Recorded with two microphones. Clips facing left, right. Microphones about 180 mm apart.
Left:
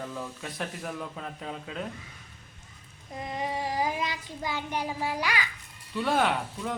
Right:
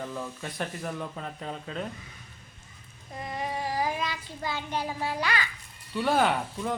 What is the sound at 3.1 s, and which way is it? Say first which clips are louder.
Child singing: left 1 dB; 20° left (ahead or behind).